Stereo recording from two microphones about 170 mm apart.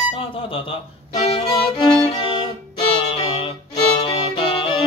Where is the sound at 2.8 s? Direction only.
35° left (ahead or behind).